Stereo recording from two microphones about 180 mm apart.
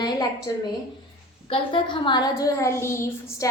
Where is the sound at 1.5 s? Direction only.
30° left (ahead or behind).